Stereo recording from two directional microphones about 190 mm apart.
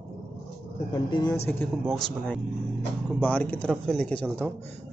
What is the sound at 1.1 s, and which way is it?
Speech, 20° left (ahead or behind).